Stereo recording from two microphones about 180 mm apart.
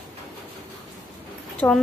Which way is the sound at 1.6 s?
15° left (ahead or behind).